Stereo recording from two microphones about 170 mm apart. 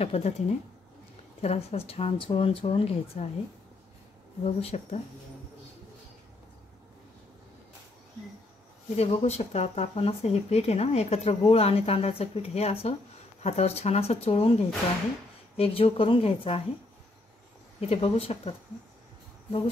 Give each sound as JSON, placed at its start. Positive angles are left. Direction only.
{"t": 0.0, "sound": "speech", "side_deg": 40}
{"t": 4.5, "sound": "speech", "side_deg": 35}
{"t": 8.9, "sound": "speech", "side_deg": 35}
{"t": 17.7, "sound": "speech", "side_deg": 35}